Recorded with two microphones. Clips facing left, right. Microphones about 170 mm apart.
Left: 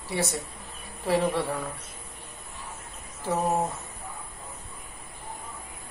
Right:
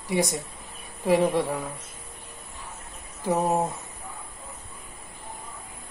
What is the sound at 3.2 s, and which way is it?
Speech, 15° right (ahead or behind).